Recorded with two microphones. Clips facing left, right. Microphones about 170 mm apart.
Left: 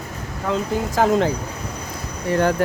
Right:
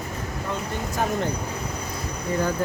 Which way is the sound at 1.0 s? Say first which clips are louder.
Left 8 dB; 90° left.